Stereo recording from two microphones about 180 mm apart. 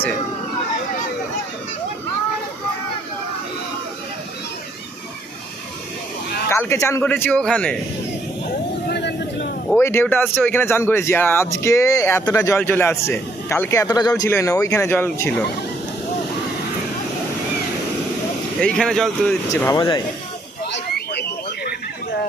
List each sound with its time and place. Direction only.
6.5 s speech: 15° left (ahead or behind)
8.9 s vehicle: 70° left (ahead or behind)
9.7 s speech: 15° left (ahead or behind)
18.6 s speech: 5° left (ahead or behind)
19.6 s speech: 20° left (ahead or behind)
20.7 s a sound: 75° left (ahead or behind)